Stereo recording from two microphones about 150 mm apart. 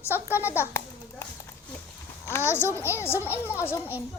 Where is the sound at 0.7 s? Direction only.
15° left (ahead or behind).